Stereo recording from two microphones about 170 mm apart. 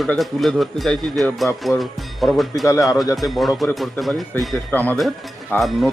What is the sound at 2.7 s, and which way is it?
Speech, 20° left (ahead or behind).